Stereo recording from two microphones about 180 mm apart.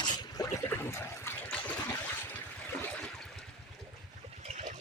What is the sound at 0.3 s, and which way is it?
Trickle, 15° left (ahead or behind).